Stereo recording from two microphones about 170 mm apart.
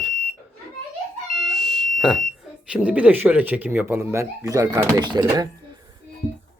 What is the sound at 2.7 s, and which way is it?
Speech, 10° right (ahead or behind).